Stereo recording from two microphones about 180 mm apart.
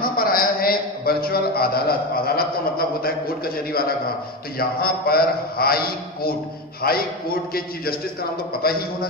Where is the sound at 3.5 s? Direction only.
55° left (ahead or behind).